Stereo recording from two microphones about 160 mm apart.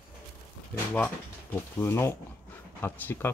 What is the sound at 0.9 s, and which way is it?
Speech, 10° left (ahead or behind).